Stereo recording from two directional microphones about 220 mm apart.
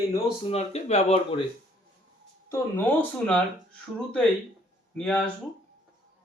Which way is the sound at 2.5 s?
10° left (ahead or behind).